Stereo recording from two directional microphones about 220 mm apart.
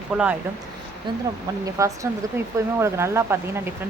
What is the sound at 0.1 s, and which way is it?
Speech, 5° right (ahead or behind).